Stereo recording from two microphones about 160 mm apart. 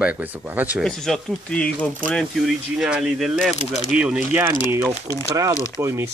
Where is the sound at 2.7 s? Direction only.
5° right (ahead or behind).